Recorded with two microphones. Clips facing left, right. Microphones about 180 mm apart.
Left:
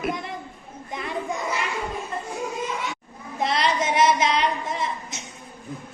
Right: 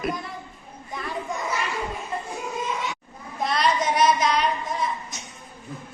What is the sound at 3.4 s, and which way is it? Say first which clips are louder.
Child singing: even; 25° left (ahead or behind).